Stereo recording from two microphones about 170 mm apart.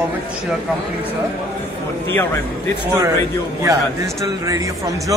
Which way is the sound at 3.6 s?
20° right (ahead or behind).